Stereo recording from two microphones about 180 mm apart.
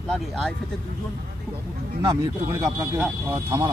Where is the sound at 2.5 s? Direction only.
20° right (ahead or behind).